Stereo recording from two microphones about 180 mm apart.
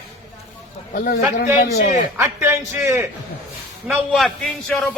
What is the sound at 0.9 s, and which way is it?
Speech, 55° left (ahead or behind).